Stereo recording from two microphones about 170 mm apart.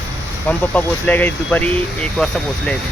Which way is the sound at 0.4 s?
10° left (ahead or behind).